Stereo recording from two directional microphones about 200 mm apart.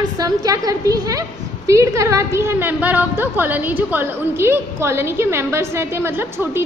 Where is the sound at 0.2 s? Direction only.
20° right (ahead or behind).